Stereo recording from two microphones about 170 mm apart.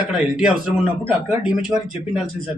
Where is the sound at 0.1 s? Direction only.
5° right (ahead or behind).